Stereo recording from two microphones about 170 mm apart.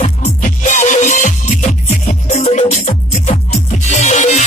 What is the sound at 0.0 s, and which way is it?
Music, 45° left (ahead or behind).